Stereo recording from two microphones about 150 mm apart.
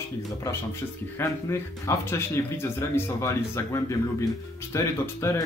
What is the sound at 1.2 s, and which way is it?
A man's voice, 15° left (ahead or behind).